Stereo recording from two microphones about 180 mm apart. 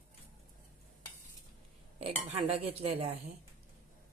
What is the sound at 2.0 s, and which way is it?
Speech, 30° right (ahead or behind).